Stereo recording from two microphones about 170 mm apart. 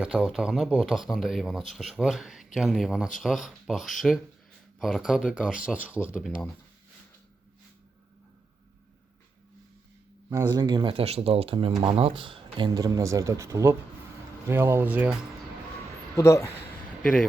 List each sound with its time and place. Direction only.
0.0 s speech: 5° right (ahead or behind)
10.2 s speech: 20° right (ahead or behind)
16.1 s speech: 15° left (ahead or behind)
17.0 s speech: 5° left (ahead or behind)